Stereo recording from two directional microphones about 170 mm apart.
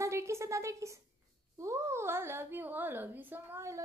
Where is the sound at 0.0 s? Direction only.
15° right (ahead or behind).